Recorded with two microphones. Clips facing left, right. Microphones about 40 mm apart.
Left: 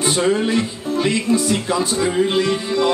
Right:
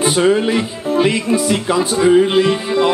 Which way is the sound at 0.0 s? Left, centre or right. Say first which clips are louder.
Right 4 dB; right.